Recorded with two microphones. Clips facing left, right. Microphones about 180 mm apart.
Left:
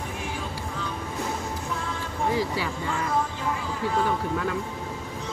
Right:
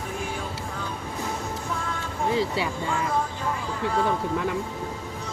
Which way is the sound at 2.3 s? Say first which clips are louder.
Right 3 dB; 25° right (ahead or behind).